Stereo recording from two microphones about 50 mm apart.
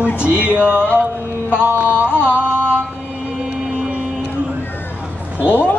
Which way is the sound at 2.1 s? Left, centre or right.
Left.